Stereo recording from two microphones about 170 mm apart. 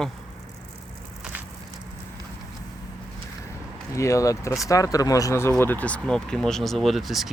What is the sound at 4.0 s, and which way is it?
Speech, 20° left (ahead or behind).